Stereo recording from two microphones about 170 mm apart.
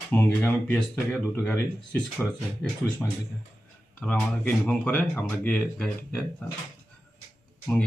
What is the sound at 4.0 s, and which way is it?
Speech, 10° left (ahead or behind).